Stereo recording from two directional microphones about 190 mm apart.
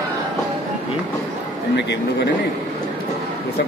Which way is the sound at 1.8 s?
65° left (ahead or behind).